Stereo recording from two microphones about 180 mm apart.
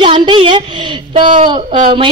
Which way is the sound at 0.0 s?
30° right (ahead or behind).